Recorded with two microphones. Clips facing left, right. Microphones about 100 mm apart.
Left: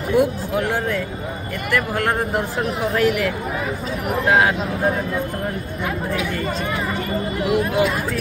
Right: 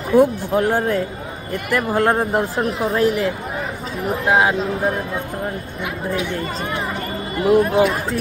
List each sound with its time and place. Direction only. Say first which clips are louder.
0.1 s speech: right 4 dB; 40° right (ahead or behind); by 4.6 s 20° right (ahead or behind)
7.4 s speech: right 5 dB; 35° right (ahead or behind)